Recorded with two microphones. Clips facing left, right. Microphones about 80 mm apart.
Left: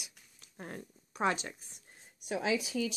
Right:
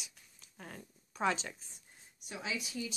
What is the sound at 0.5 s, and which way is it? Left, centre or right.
Speech, left.